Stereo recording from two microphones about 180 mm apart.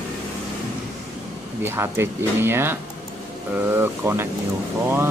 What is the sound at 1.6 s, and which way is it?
Speech, 10° right (ahead or behind).